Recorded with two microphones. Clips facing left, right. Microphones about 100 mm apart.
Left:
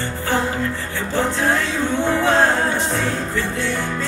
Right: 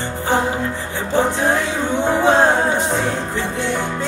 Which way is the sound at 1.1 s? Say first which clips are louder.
Right 3 dB; 20° right (ahead or behind).